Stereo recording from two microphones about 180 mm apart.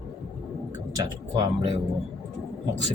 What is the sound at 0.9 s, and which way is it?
Speech, 25° right (ahead or behind).